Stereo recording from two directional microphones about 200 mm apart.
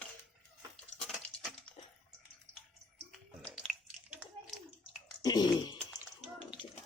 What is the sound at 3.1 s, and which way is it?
Bathtub, 5° left (ahead or behind).